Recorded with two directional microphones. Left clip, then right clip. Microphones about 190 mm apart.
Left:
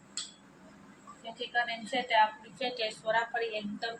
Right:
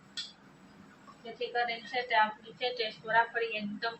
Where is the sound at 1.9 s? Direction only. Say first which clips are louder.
Left 2 dB; 20° left (ahead or behind).